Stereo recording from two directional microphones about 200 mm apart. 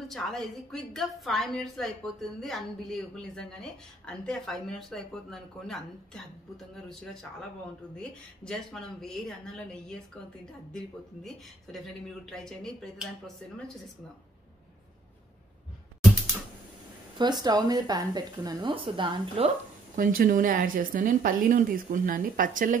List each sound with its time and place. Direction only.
0.1 s a woman's voice: centre (ahead or behind)
11.2 s a woman's voice: centre (ahead or behind)
17.2 s speech: 20° right (ahead or behind)
20.0 s speech: 45° right (ahead or behind)